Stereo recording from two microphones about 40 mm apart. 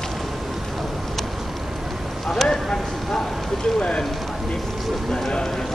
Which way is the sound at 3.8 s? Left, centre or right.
Left.